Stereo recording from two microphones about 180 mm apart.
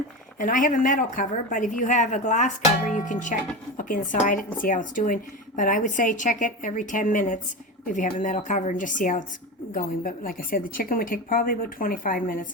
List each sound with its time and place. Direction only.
0.3 s a woman's voice: 45° left (ahead or behind)